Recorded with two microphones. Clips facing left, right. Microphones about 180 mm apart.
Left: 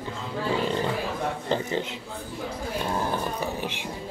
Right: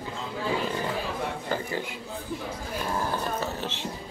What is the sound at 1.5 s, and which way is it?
Speech, 20° left (ahead or behind).